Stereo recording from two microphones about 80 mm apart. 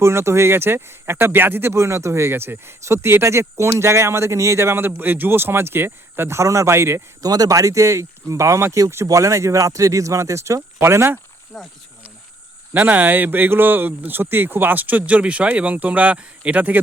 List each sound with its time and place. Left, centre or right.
0.0 s speech: right
7.2 s speech: right
11.5 s speech: centre
12.7 s speech: right